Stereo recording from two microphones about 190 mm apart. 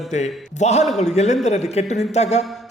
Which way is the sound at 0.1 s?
35° left (ahead or behind).